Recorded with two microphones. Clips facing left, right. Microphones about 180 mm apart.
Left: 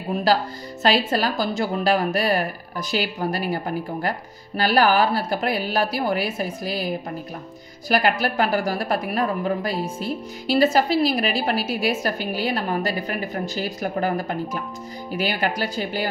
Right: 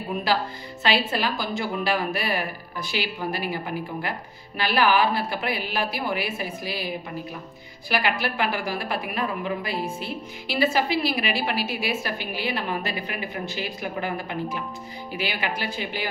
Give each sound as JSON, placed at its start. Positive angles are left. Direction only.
{"t": 0.8, "sound": "a woman's voice", "side_deg": 40}
{"t": 7.9, "sound": "a woman's voice", "side_deg": 40}